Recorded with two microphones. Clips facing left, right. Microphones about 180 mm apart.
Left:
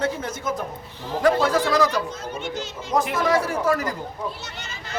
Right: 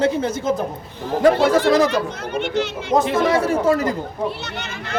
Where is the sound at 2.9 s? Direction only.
25° right (ahead or behind).